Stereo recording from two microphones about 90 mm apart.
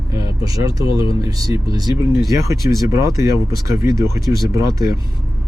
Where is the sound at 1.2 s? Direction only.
45° right (ahead or behind).